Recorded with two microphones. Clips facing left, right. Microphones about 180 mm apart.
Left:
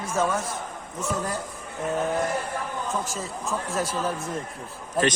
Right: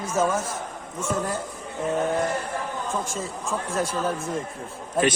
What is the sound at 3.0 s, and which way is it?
Speech, centre (ahead or behind).